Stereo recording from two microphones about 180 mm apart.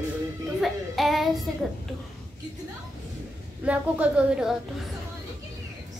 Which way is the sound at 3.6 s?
5° right (ahead or behind).